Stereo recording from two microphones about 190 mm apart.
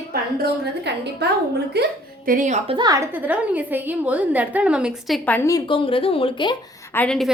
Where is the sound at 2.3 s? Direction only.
40° right (ahead or behind).